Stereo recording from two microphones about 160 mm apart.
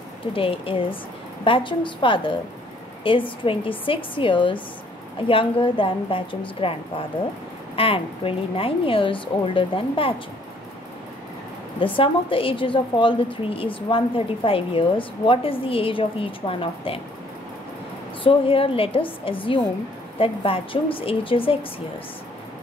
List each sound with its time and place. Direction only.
0.3 s a woman's voice: 35° left (ahead or behind)
11.8 s a woman's voice: 35° left (ahead or behind)
18.2 s a woman's voice: 35° left (ahead or behind)